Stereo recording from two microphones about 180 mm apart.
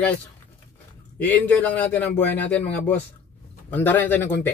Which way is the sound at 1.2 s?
10° left (ahead or behind).